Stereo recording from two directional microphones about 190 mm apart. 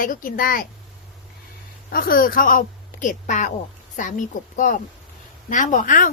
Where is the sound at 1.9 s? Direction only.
50° left (ahead or behind).